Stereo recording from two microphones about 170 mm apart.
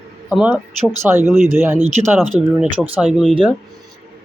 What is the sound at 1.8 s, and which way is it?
Speech, 45° right (ahead or behind).